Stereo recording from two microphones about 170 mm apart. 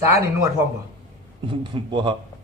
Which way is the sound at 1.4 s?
30° right (ahead or behind).